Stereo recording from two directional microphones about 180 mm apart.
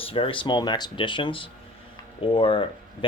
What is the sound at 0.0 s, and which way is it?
Speech, 30° left (ahead or behind).